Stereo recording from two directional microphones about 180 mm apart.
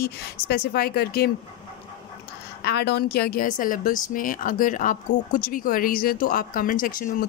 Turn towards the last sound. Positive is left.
turn(degrees=50)  # may be behind; listen again after turning